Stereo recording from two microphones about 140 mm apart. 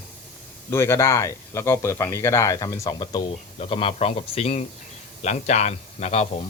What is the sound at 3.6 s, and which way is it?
A man's voice, 40° left (ahead or behind).